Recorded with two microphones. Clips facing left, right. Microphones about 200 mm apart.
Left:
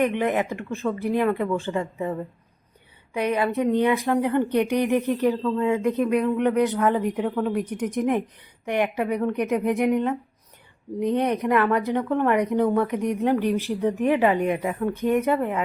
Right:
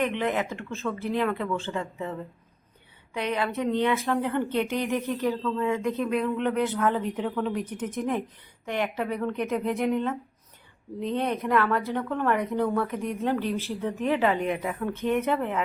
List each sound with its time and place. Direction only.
0.2 s a woman's voice: 15° left (ahead or behind)
3.2 s a woman's voice: 15° left (ahead or behind)